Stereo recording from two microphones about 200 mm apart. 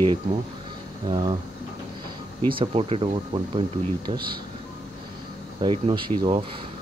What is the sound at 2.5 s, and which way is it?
Speech, 25° right (ahead or behind).